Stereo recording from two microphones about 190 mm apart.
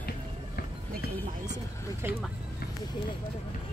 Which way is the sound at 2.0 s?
10° right (ahead or behind).